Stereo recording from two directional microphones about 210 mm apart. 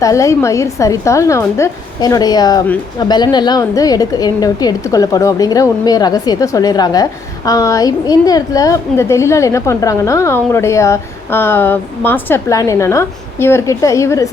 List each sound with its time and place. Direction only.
0.0 s a woman's voice: 15° left (ahead or behind)